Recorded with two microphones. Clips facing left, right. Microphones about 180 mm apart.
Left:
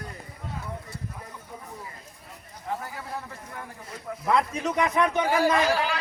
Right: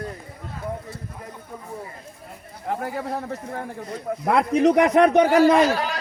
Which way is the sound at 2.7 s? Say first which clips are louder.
Right 7 dB; 60° right (ahead or behind).